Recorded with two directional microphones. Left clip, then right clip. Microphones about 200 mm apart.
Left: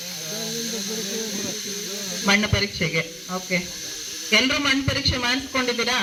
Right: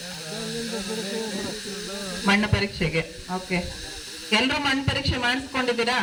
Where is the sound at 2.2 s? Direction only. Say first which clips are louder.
Left 2 dB; 40° right (ahead or behind).